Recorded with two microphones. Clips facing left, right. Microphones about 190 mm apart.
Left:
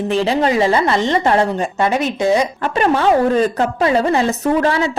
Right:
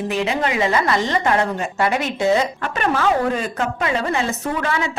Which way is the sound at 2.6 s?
35° left (ahead or behind).